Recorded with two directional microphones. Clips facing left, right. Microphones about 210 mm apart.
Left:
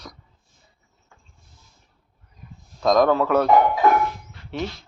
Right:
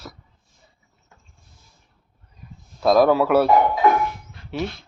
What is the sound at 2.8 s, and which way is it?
Speech, 5° right (ahead or behind).